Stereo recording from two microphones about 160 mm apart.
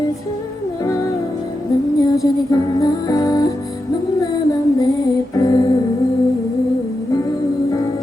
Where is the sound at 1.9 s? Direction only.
20° left (ahead or behind).